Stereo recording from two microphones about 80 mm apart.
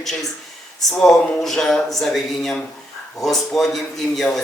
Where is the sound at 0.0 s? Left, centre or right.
Centre.